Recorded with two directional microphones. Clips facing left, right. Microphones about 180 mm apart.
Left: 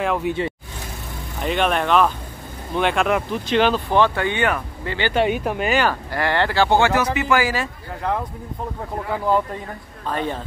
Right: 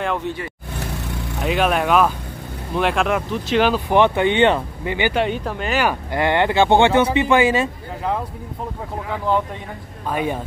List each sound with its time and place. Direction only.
0.0 s speech: 5° left (ahead or behind)
1.4 s speech: 5° right (ahead or behind)
3.9 s speech: 20° right (ahead or behind)
5.1 s speech: 10° left (ahead or behind)
5.8 s speech: 15° right (ahead or behind)
10.0 s speech: 10° right (ahead or behind)